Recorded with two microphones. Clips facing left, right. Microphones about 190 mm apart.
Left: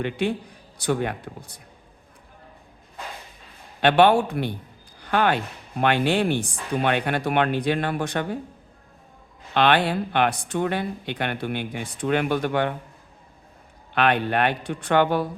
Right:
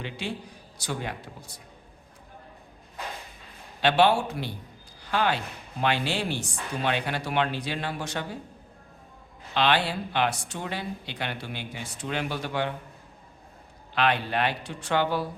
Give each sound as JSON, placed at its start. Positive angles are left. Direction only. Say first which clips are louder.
{"t": 0.0, "sound": "speech", "louder": "left 9 dB", "side_deg": 55}
{"t": 3.8, "sound": "speech", "louder": "left 5 dB", "side_deg": 55}
{"t": 9.6, "sound": "speech", "louder": "left 5 dB", "side_deg": 55}
{"t": 13.9, "sound": "speech", "louder": "left 4 dB", "side_deg": 55}